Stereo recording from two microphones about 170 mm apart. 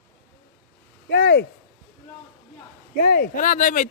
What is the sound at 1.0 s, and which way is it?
Speech, 75° left (ahead or behind).